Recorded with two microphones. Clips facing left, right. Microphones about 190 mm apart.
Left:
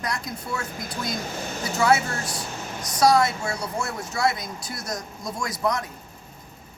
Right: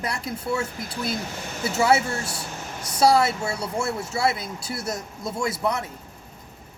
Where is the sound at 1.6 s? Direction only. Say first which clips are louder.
Right 1 dB; 25° right (ahead or behind).